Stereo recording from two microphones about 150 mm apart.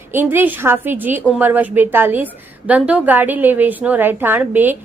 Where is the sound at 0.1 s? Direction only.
15° right (ahead or behind).